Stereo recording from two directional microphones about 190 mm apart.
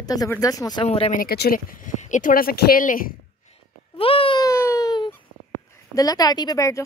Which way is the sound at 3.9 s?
30° left (ahead or behind).